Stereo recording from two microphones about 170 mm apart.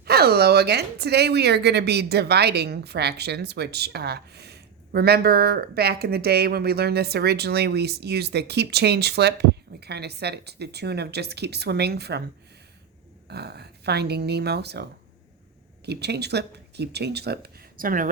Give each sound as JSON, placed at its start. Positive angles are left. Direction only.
{"t": 0.0, "sound": "speech", "side_deg": -65}
{"t": 13.2, "sound": "speech", "side_deg": -75}
{"t": 15.9, "sound": "speech", "side_deg": -75}